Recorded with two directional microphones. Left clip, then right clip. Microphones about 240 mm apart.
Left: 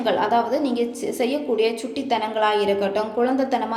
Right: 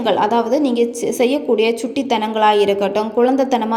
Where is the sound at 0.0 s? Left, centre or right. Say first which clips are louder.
Right 4 dB; right.